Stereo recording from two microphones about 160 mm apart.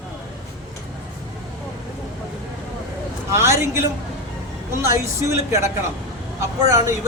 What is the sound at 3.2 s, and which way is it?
A man's voice, 15° right (ahead or behind).